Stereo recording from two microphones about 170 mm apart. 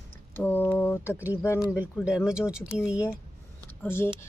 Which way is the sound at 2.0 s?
5° right (ahead or behind).